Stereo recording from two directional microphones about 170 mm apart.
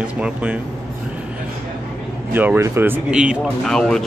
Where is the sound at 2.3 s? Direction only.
10° right (ahead or behind).